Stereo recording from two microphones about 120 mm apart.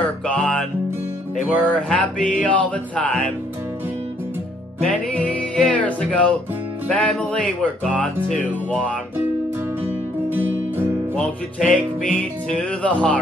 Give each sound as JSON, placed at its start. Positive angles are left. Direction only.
{"t": 0.3, "sound": "music", "side_deg": 10}
{"t": 1.6, "sound": "speech", "side_deg": 10}
{"t": 4.8, "sound": "music", "side_deg": 10}
{"t": 6.9, "sound": "speech", "side_deg": 10}
{"t": 9.8, "sound": "music", "side_deg": -15}
{"t": 11.1, "sound": "speech", "side_deg": 10}